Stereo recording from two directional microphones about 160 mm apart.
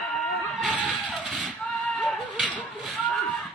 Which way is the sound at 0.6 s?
Centre (ahead or behind).